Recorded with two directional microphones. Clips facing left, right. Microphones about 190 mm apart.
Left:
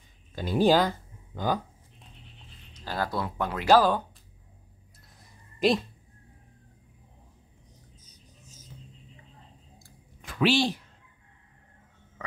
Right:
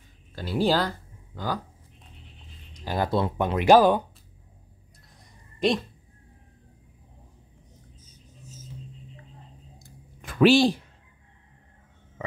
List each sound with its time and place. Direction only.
0.3 s speech: 15° left (ahead or behind)
2.7 s speech: 15° right (ahead or behind)
5.6 s speech: centre (ahead or behind)
10.2 s a sound: 45° right (ahead or behind)